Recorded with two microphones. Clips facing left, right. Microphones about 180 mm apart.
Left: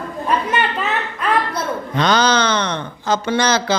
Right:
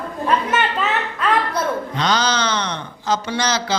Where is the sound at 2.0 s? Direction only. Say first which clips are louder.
Left 6 dB; 55° left (ahead or behind).